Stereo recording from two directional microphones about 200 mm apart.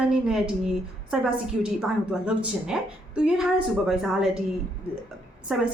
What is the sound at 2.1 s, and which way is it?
A woman's voice, 5° right (ahead or behind).